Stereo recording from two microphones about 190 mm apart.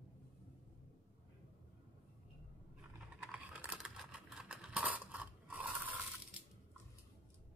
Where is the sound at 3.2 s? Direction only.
5° right (ahead or behind).